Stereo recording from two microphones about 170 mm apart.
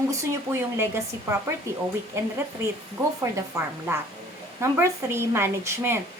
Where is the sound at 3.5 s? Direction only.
15° right (ahead or behind).